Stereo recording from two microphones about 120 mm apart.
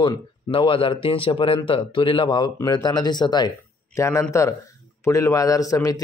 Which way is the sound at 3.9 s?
25° left (ahead or behind).